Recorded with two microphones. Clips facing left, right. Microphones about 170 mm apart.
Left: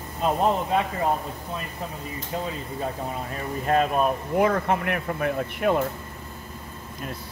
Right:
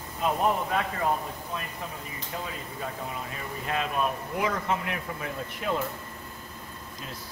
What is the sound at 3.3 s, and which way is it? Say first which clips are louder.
Speech: left 10 dB; 45° left (ahead or behind).